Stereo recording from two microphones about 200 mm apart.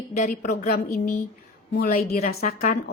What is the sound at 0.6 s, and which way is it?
A woman's voice, 45° left (ahead or behind).